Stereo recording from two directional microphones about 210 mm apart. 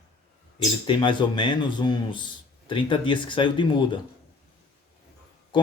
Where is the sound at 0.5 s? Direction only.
20° left (ahead or behind).